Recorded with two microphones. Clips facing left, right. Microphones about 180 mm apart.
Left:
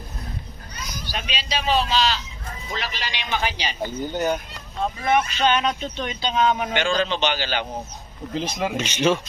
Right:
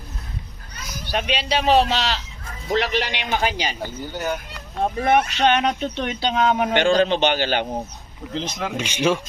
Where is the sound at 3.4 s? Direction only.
45° right (ahead or behind).